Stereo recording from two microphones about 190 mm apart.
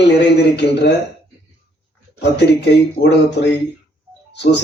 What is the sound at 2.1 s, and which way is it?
A man's voice, 60° left (ahead or behind).